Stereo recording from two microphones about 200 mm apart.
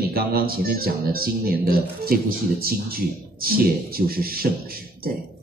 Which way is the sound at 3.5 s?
45° right (ahead or behind).